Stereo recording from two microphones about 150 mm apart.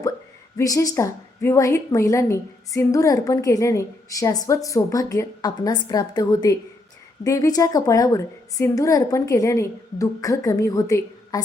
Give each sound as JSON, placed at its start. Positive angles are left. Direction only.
{"t": 0.5, "sound": "a woman's voice", "side_deg": 20}